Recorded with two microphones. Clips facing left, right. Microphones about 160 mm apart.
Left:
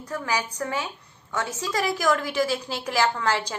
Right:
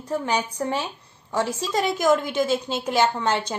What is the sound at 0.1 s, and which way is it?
A woman's voice, 25° right (ahead or behind).